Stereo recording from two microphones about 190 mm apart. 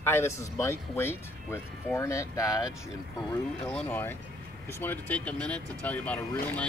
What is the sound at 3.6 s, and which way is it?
Speech, 5° left (ahead or behind).